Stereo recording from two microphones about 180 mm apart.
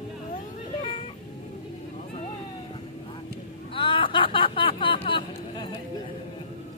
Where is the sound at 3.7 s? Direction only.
30° left (ahead or behind).